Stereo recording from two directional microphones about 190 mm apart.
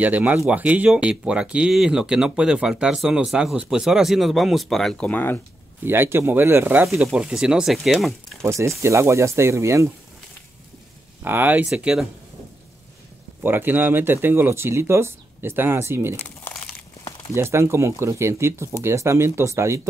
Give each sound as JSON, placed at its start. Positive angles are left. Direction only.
{"t": 0.0, "sound": "speech", "side_deg": -10}
{"t": 5.9, "sound": "speech", "side_deg": -10}
{"t": 8.4, "sound": "speech", "side_deg": -15}
{"t": 11.2, "sound": "speech", "side_deg": -10}
{"t": 13.4, "sound": "speech", "side_deg": -10}
{"t": 16.2, "sound": "crumpling", "side_deg": 10}
{"t": 17.4, "sound": "speech", "side_deg": -15}